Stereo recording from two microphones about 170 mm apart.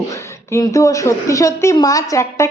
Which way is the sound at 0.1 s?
20° left (ahead or behind).